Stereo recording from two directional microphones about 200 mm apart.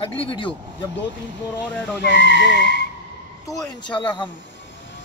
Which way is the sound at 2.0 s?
60° left (ahead or behind).